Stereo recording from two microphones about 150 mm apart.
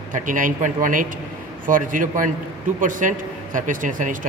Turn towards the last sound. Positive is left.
turn(degrees=-60)  # may be behind; listen again after turning